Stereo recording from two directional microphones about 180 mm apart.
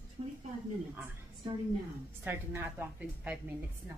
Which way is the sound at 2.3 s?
10° right (ahead or behind).